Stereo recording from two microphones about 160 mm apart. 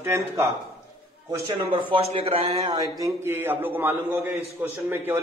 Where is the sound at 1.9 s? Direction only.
35° right (ahead or behind).